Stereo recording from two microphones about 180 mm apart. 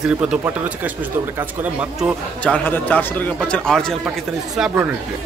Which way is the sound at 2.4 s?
10° left (ahead or behind).